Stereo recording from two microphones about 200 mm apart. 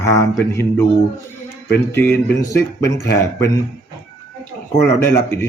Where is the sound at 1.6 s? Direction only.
10° left (ahead or behind).